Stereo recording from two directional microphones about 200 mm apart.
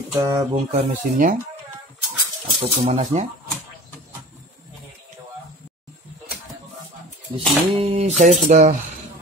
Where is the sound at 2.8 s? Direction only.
35° right (ahead or behind).